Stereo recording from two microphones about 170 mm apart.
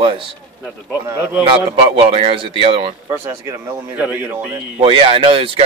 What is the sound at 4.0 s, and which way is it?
Speech, 10° right (ahead or behind).